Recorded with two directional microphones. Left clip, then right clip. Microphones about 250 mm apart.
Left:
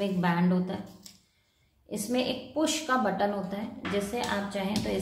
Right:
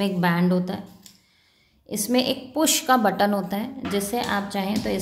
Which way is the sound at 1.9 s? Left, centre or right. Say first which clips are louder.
Right 7 dB; right.